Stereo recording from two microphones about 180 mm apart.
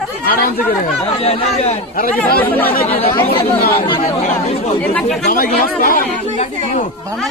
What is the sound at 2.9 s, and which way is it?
A man's voice, 35° left (ahead or behind).